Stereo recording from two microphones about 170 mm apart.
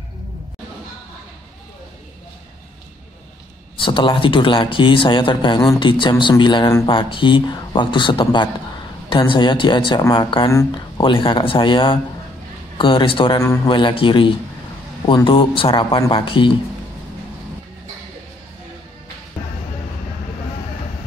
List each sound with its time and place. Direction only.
3.7 s a man's voice: 30° left (ahead or behind)
11.0 s a man's voice: 30° left (ahead or behind)